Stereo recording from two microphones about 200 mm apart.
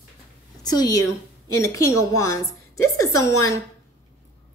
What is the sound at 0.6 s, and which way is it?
A woman's voice, 20° left (ahead or behind).